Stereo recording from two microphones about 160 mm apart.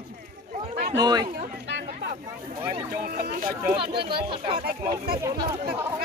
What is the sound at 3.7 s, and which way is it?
A man's voice, 35° right (ahead or behind).